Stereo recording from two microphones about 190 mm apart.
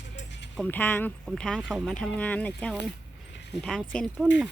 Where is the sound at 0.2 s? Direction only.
70° left (ahead or behind).